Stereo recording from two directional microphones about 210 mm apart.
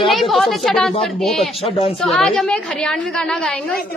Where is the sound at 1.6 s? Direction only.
25° left (ahead or behind).